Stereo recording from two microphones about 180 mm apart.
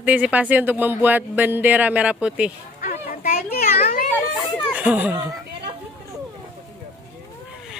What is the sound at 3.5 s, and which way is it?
Children playing, 55° left (ahead or behind).